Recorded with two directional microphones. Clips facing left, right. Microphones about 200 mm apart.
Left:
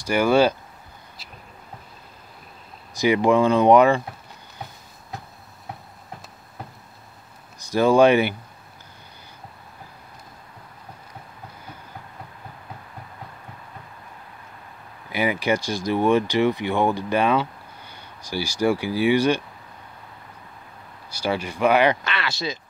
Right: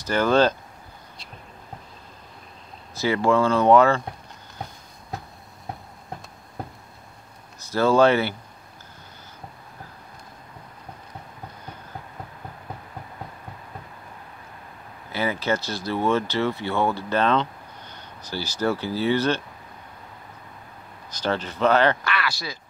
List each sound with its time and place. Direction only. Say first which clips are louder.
0.0 s speech: left 2 dB; 10° left (ahead or behind)
2.9 s speech: left 3 dB; 15° left (ahead or behind)
7.6 s speech: left 2 dB; 15° left (ahead or behind)
15.0 s speech: left 2 dB; 15° left (ahead or behind)
21.1 s speech: left 1 dB; 10° left (ahead or behind)
22.1 s speech: left 1 dB; 25° left (ahead or behind)